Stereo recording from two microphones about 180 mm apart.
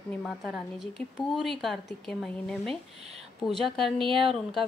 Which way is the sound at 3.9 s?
30° right (ahead or behind).